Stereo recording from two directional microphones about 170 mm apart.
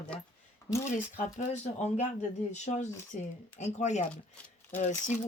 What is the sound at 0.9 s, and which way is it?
Speech, 45° left (ahead or behind).